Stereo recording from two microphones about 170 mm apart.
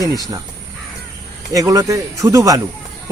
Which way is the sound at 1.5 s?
20° right (ahead or behind).